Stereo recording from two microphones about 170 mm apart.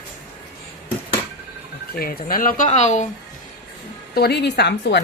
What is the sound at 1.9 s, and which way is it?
Speech, 60° left (ahead or behind).